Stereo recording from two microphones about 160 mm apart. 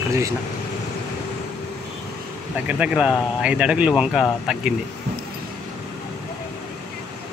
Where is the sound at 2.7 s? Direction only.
5° right (ahead or behind).